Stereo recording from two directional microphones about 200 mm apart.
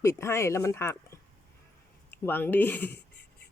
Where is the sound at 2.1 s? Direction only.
10° left (ahead or behind).